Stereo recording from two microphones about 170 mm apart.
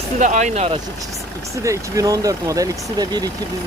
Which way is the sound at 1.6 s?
20° right (ahead or behind).